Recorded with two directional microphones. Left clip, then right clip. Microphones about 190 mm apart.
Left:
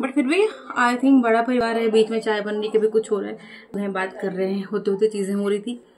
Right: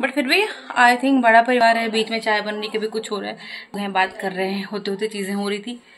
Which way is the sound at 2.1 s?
10° left (ahead or behind).